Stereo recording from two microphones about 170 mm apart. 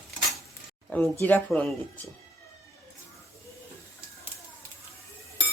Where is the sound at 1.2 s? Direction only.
10° left (ahead or behind).